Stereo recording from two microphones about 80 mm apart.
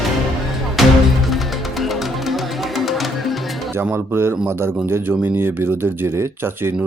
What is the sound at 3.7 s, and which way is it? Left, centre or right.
A man's voice, right.